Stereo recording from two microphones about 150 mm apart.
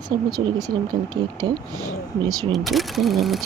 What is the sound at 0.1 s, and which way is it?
Speech, 30° right (ahead or behind).